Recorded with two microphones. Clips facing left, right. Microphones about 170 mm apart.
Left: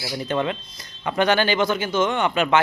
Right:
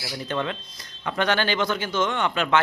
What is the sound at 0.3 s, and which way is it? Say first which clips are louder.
A man's voice: left 4 dB; 15° left (ahead or behind).